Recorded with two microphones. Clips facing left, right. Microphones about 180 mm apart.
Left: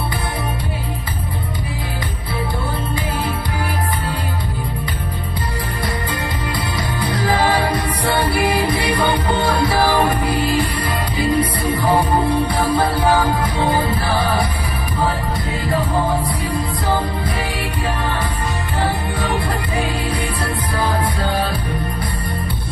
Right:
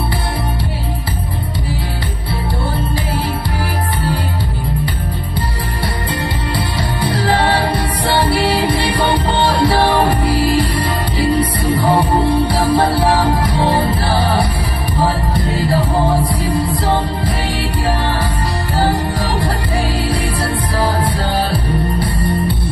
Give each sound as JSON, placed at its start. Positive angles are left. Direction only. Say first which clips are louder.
{"t": 6.5, "sound": "music", "louder": "right 3 dB", "side_deg": -30}
{"t": 11.7, "sound": "music", "louder": "right 3 dB", "side_deg": -10}
{"t": 12.4, "sound": "music", "louder": "right 3 dB", "side_deg": -30}
{"t": 15.5, "sound": "music", "louder": "right 3 dB", "side_deg": -30}
{"t": 18.8, "sound": "music", "louder": "right 5 dB", "side_deg": -35}
{"t": 21.2, "sound": "music", "louder": "right 3 dB", "side_deg": -30}